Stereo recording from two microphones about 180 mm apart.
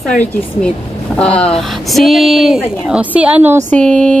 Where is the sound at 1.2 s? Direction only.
5° left (ahead or behind).